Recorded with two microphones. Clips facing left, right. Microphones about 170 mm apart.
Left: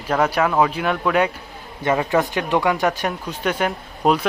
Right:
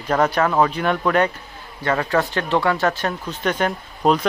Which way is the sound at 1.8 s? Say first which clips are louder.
Left 1 dB; 15° left (ahead or behind).